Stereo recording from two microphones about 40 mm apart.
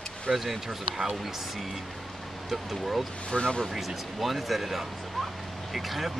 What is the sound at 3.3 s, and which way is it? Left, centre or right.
Speech, left.